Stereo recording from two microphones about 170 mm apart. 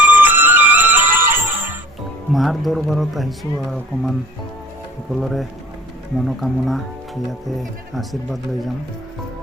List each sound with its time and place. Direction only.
0.0 s music: 10° right (ahead or behind)
2.3 s speech: centre (ahead or behind)
5.2 s speech: centre (ahead or behind)